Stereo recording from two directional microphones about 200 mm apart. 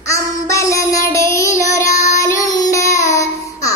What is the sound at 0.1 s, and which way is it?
Child singing, 15° left (ahead or behind).